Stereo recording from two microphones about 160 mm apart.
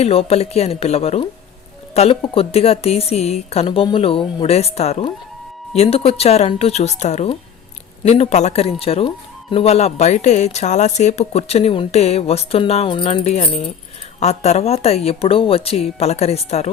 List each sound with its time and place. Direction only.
0.0 s speech: 40° left (ahead or behind)